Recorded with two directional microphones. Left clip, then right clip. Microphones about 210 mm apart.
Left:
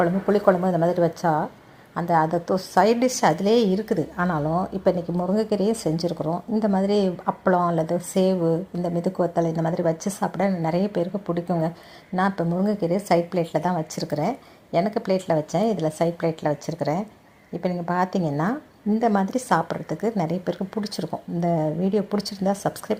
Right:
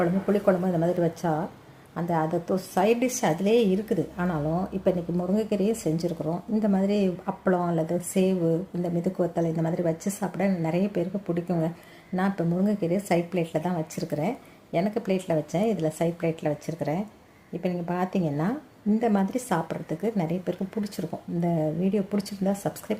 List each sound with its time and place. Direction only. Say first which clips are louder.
0.0 s a woman's voice: left 4 dB; 15° left (ahead or behind)